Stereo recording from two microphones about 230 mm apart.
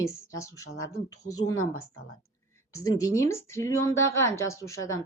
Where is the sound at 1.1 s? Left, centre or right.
Left.